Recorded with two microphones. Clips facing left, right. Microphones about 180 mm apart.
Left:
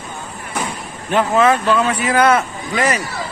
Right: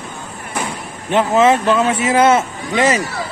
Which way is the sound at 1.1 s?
25° right (ahead or behind).